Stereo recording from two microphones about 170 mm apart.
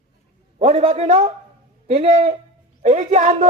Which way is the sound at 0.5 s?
35° right (ahead or behind).